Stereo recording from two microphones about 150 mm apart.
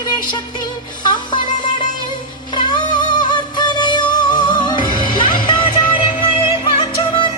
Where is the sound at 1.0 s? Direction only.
30° left (ahead or behind).